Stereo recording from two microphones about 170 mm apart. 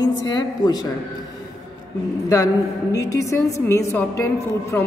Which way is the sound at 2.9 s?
20° left (ahead or behind).